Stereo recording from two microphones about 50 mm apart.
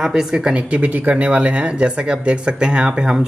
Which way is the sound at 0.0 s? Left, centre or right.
Centre.